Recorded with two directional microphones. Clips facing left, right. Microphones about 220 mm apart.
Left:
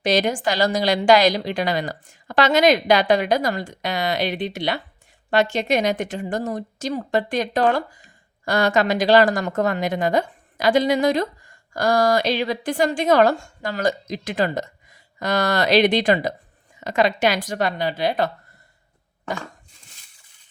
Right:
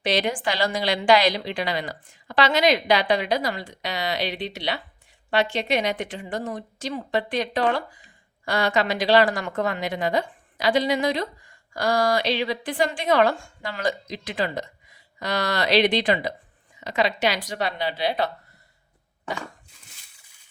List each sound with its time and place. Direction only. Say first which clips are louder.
0.0 s a woman's voice: left 4 dB; 45° left (ahead or behind)